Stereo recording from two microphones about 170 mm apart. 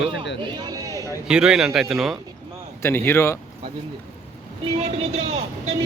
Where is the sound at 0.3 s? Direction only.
25° right (ahead or behind).